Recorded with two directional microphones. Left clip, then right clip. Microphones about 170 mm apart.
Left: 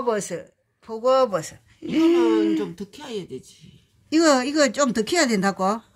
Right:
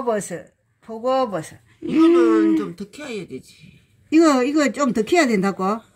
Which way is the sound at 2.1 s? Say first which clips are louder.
Right 4 dB; 45° left (ahead or behind).